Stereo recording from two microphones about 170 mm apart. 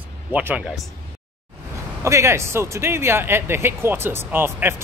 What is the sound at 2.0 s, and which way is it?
Speech, 15° right (ahead or behind).